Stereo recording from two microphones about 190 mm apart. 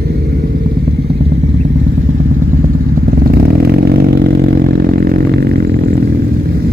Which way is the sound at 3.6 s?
55° right (ahead or behind).